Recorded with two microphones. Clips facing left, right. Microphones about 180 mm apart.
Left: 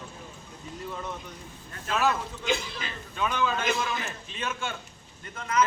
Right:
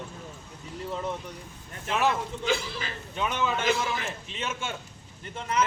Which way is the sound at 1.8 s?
20° right (ahead or behind).